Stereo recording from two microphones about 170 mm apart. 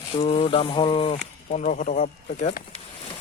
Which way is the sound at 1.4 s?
45° left (ahead or behind).